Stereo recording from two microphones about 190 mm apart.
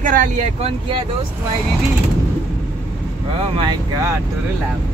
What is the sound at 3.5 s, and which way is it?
Speech, 25° right (ahead or behind).